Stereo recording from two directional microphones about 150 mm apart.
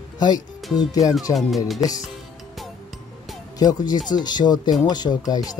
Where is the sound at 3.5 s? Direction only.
25° left (ahead or behind).